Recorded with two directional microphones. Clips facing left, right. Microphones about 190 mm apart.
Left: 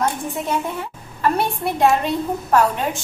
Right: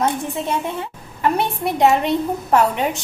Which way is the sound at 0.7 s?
20° right (ahead or behind).